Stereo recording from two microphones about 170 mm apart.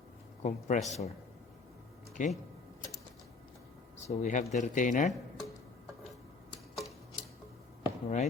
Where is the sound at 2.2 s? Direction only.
45° left (ahead or behind).